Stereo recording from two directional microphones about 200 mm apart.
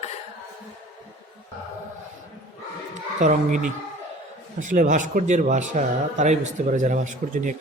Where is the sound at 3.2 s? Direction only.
40° right (ahead or behind).